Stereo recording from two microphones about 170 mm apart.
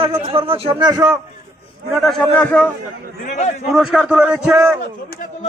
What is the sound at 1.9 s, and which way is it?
Speech, centre (ahead or behind).